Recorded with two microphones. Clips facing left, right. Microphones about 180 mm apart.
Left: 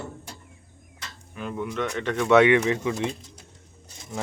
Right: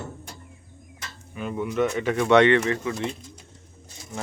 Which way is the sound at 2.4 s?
15° left (ahead or behind).